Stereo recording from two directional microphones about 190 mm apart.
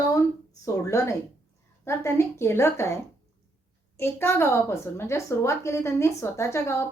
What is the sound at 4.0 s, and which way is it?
A woman's voice, 10° left (ahead or behind).